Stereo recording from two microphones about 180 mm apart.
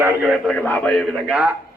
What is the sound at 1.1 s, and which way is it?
Speech, 5° right (ahead or behind).